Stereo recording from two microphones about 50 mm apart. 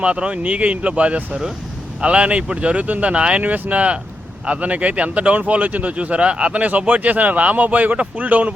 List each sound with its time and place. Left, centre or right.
0.0 s speech: right